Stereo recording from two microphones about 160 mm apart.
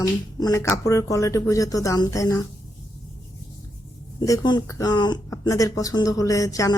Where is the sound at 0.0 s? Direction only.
20° left (ahead or behind).